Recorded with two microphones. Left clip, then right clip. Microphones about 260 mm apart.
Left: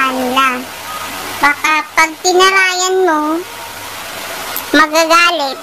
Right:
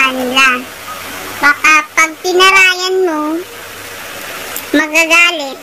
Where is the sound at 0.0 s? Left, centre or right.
Centre.